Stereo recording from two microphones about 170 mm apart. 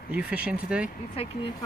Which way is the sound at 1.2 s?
35° left (ahead or behind).